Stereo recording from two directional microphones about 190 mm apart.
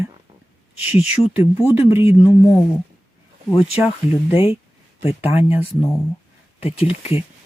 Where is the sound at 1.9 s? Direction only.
15° right (ahead or behind).